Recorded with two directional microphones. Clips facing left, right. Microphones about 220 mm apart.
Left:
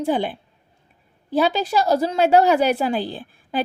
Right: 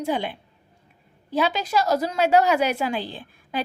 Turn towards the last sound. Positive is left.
turn(degrees=35)  # may be behind; listen again after turning